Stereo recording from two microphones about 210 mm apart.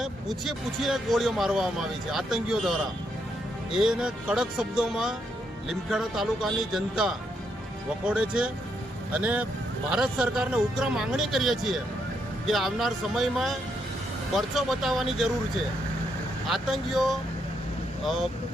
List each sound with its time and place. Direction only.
0.0 s speech: centre (ahead or behind)
16.5 s speech: centre (ahead or behind)